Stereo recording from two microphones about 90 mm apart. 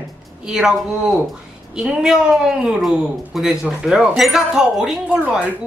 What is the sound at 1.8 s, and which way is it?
A woman's voice, 10° right (ahead or behind).